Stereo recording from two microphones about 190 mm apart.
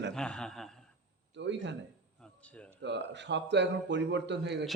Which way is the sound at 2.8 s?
70° right (ahead or behind).